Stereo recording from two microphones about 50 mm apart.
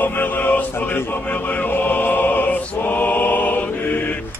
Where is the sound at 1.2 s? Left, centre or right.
Left.